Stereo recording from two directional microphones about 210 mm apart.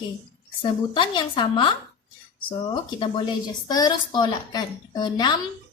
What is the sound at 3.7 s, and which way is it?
A woman's voice, 20° left (ahead or behind).